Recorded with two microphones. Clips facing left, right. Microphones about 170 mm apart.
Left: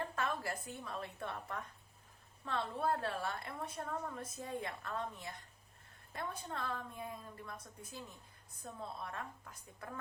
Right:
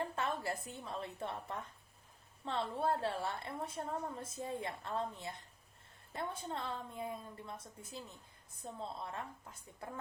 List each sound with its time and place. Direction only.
0.2 s a woman's voice: 25° right (ahead or behind)